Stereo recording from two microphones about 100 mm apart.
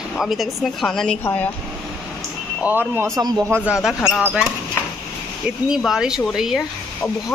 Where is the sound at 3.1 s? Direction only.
40° right (ahead or behind).